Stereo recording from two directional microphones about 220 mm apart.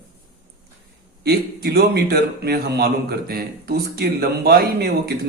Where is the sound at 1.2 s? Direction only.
45° right (ahead or behind).